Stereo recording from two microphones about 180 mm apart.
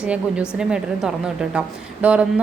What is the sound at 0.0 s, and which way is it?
A woman's voice, 5° right (ahead or behind).